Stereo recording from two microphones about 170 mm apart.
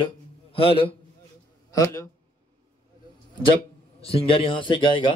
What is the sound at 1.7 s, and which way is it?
Speech, 20° left (ahead or behind).